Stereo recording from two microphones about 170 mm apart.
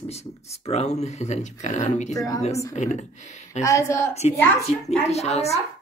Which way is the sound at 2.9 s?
40° left (ahead or behind).